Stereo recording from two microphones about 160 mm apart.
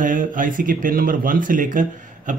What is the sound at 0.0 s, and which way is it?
A man's voice, 55° right (ahead or behind).